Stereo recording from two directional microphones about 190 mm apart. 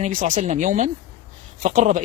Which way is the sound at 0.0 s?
45° right (ahead or behind).